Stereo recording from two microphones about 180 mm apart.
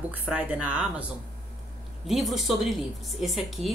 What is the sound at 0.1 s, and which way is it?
Speech, 10° right (ahead or behind).